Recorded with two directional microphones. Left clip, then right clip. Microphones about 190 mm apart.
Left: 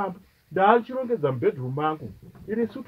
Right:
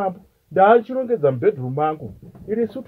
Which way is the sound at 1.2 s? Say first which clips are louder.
Right 6 dB; 10° left (ahead or behind).